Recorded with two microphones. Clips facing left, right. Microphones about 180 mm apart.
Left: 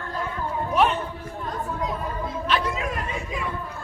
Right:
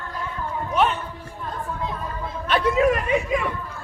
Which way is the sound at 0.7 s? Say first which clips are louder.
Even; centre (ahead or behind).